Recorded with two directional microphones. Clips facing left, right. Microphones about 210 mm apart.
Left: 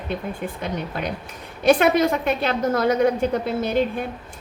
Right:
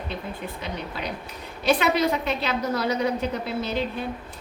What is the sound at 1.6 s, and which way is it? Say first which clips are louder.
A woman's voice: left 5 dB; 50° left (ahead or behind).